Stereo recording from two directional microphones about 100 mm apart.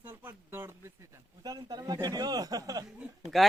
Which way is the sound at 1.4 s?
40° right (ahead or behind).